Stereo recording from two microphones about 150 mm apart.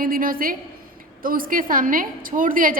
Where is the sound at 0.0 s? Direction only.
70° right (ahead or behind).